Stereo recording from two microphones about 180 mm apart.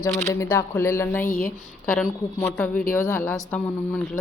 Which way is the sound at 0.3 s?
15° left (ahead or behind).